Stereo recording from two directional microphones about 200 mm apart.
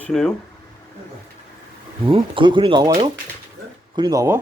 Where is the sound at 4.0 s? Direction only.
20° right (ahead or behind).